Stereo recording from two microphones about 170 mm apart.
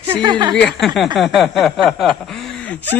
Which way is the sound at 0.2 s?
25° right (ahead or behind).